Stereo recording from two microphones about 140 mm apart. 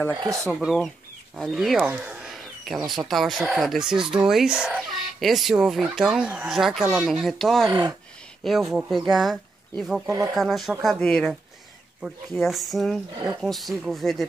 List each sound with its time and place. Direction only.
0.2 s speech: 20° right (ahead or behind)
0.6 s speech: centre (ahead or behind)
1.9 s a sound: 10° right (ahead or behind)
2.9 s speech: centre (ahead or behind)
10.0 s speech: 25° right (ahead or behind)
10.3 s speech: centre (ahead or behind)
11.0 s speech: 10° left (ahead or behind)
12.0 s speech: centre (ahead or behind)